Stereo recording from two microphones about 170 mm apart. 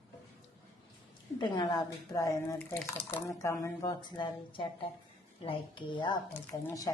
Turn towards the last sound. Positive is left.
turn(degrees=15)  # may be behind; listen again after turning